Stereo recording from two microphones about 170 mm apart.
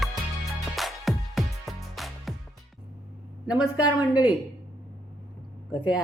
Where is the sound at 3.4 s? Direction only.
5° right (ahead or behind).